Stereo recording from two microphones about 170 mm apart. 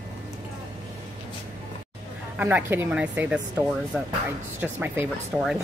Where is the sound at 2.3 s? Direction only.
10° right (ahead or behind).